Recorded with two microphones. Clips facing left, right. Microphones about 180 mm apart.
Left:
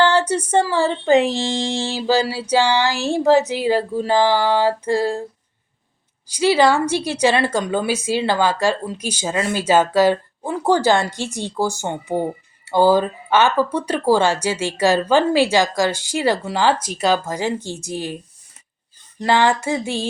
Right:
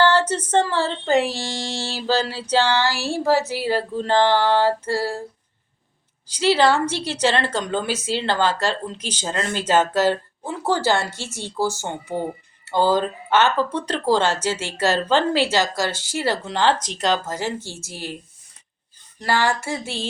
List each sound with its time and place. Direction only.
0.0 s speech: 15° left (ahead or behind)
6.2 s speech: 10° left (ahead or behind)
19.2 s a sound: 20° left (ahead or behind)